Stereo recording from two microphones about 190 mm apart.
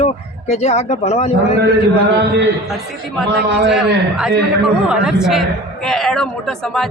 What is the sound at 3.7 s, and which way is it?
Speech, 5° right (ahead or behind).